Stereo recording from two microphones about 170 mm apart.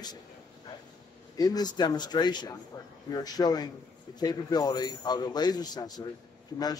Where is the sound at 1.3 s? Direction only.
20° left (ahead or behind).